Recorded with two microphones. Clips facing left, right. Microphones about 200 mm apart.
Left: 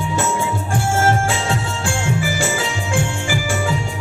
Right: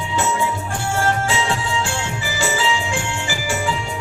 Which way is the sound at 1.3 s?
50° left (ahead or behind).